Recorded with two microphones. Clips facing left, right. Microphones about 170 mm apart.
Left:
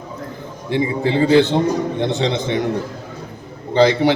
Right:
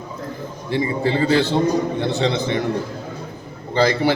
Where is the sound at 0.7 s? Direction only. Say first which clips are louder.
Left 2 dB; 20° left (ahead or behind).